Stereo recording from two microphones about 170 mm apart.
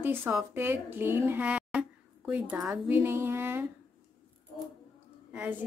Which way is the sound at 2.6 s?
10° right (ahead or behind).